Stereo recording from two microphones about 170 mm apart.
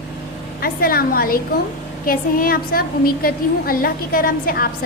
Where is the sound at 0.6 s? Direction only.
60° left (ahead or behind).